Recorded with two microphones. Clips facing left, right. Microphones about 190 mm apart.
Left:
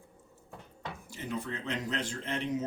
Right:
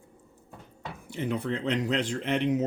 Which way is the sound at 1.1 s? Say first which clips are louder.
Right 8 dB; 65° right (ahead or behind).